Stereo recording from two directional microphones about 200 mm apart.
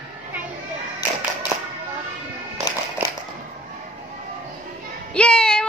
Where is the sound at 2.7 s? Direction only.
20° left (ahead or behind).